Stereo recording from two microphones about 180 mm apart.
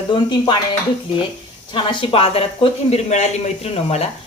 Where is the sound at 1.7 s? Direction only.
25° left (ahead or behind).